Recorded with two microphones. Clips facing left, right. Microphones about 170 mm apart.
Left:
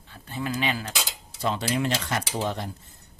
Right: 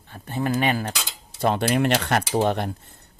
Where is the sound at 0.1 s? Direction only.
50° right (ahead or behind).